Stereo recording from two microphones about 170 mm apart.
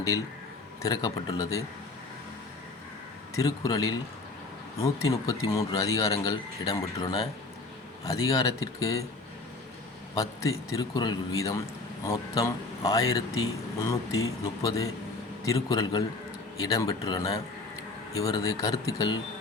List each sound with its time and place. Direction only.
0.8 s a man's voice: 20° left (ahead or behind)
3.3 s a man's voice: 20° left (ahead or behind)
10.2 s a man's voice: 20° left (ahead or behind)